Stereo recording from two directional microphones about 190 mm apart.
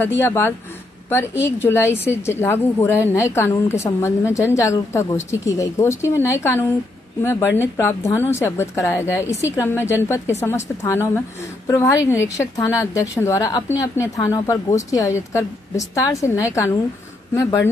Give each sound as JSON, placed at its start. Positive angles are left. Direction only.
{"t": 0.2, "sound": "a woman's voice", "side_deg": 10}